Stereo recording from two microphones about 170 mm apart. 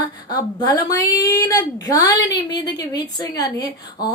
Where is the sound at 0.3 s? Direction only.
25° left (ahead or behind).